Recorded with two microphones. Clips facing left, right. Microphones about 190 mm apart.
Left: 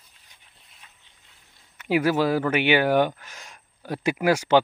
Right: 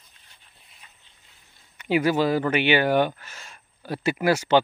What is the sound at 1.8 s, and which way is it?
Speech, 5° left (ahead or behind).